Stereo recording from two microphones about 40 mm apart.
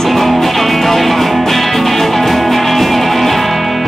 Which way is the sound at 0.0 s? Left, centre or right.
Centre.